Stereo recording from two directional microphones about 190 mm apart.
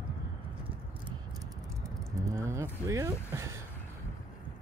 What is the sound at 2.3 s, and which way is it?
Speech, 15° right (ahead or behind).